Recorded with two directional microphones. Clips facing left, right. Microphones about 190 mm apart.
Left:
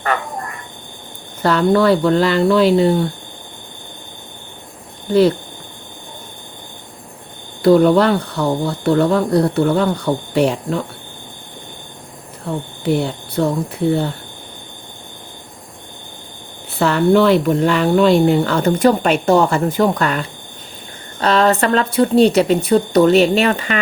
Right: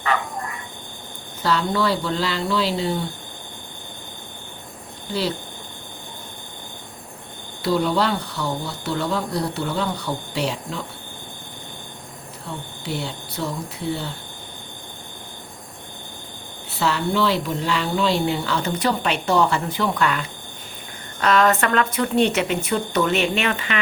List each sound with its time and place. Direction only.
1.4 s speech: 55° left (ahead or behind)
7.6 s speech: 55° left (ahead or behind)
12.5 s speech: 55° left (ahead or behind)
16.7 s speech: 55° left (ahead or behind)
21.2 s speech: 30° left (ahead or behind)